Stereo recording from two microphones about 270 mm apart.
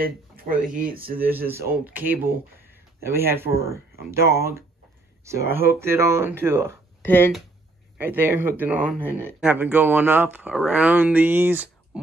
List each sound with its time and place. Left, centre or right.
0.0 s speech: right
1.3 s speech: centre
3.7 s speech: right
4.1 s speech: centre
8.0 s speech: centre
11.9 s a sound: centre